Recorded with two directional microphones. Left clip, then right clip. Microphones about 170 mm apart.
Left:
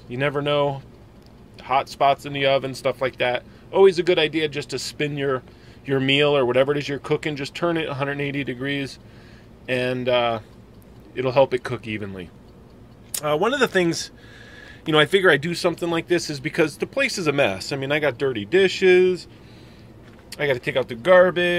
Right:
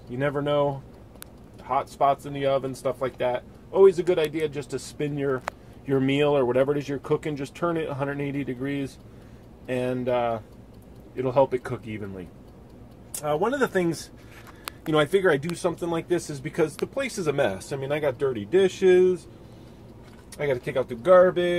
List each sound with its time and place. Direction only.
0.1 s speech: 15° left (ahead or behind)
20.3 s speech: 10° left (ahead or behind)